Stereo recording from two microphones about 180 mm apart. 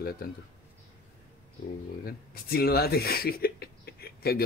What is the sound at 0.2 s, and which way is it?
Speech, 55° left (ahead or behind).